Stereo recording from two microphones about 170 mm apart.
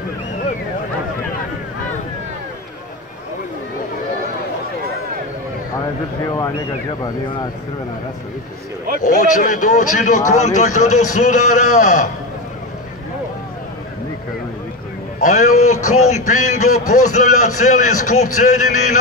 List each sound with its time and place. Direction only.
6.2 s speech: 20° left (ahead or behind)
9.0 s a man's voice: 45° left (ahead or behind)
15.1 s a man's voice: 45° left (ahead or behind)